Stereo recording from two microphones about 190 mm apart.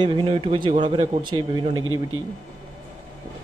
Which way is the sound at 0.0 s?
25° right (ahead or behind).